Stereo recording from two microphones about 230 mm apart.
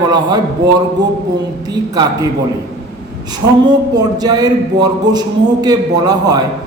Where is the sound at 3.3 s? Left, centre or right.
Centre.